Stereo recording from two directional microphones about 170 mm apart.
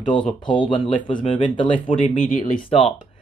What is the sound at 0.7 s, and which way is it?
Speech, 30° left (ahead or behind).